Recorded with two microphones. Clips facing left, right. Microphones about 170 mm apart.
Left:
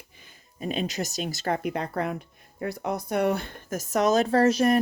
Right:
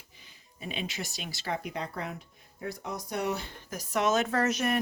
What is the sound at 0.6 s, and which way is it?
Speech, 45° left (ahead or behind).